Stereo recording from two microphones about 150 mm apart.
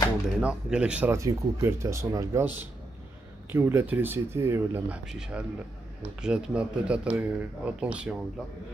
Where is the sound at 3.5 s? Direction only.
15° right (ahead or behind).